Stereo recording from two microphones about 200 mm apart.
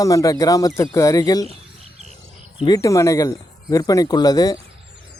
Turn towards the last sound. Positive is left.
turn(degrees=20)  # may be behind; listen again after turning